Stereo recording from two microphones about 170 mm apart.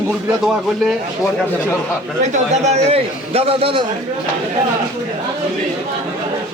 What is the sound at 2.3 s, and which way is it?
A man's voice, 40° right (ahead or behind).